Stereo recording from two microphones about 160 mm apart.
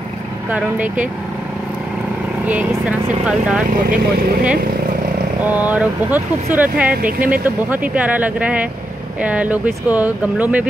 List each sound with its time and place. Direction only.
0.5 s speech: 10° right (ahead or behind)
2.4 s speech: 10° right (ahead or behind)
3.7 s speech: 65° right (ahead or behind)
5.4 s speech: 10° right (ahead or behind)
6.9 s speech: 60° right (ahead or behind)
7.4 s speech: 10° right (ahead or behind)